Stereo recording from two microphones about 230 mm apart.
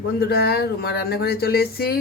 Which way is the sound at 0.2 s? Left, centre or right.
Left.